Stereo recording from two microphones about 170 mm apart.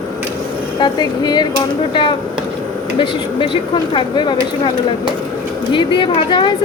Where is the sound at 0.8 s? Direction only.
25° left (ahead or behind).